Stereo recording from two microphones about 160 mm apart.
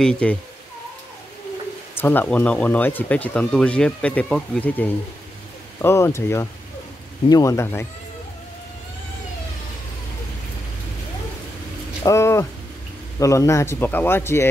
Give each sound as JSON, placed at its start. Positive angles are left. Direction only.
{"t": 0.0, "sound": "speech", "side_deg": 5}
{"t": 2.0, "sound": "speech", "side_deg": 10}
{"t": 12.0, "sound": "speech", "side_deg": 20}